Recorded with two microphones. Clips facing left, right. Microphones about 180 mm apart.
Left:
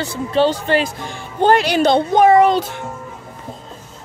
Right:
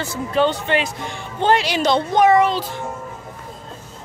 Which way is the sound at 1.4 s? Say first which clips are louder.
Left 4 dB; 45° left (ahead or behind).